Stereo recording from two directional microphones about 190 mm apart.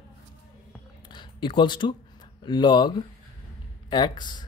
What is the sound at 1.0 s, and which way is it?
Speech, 25° left (ahead or behind).